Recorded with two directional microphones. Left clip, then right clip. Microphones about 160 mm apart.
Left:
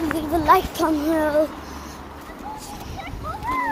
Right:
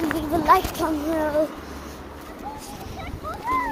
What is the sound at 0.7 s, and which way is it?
Speech, 30° left (ahead or behind).